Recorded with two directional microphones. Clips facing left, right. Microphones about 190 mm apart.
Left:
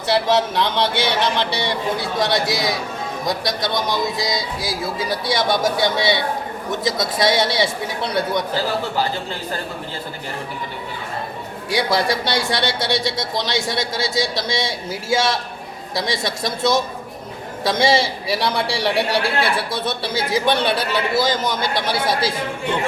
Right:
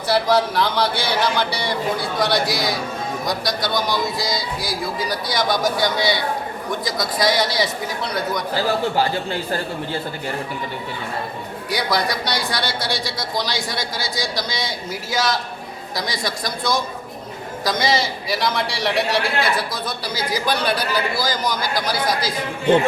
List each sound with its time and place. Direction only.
0.3 s a man's voice: 20° left (ahead or behind)
3.8 s a man's voice: 20° left (ahead or behind)
11.7 s a man's voice: 25° left (ahead or behind)